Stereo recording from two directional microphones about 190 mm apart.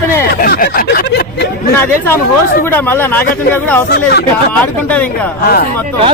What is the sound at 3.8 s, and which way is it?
Speech, 60° left (ahead or behind).